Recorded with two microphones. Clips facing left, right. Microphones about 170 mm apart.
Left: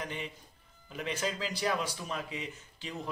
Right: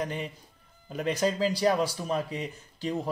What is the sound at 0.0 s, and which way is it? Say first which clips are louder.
Speech: right 6 dB; 40° right (ahead or behind).